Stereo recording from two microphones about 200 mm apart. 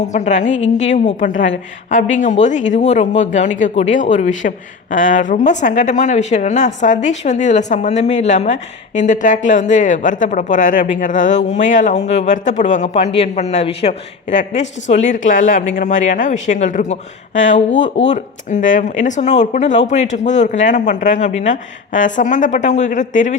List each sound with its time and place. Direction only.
0.0 s speech: 35° left (ahead or behind)